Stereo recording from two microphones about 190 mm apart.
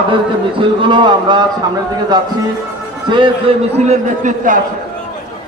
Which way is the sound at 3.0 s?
25° right (ahead or behind).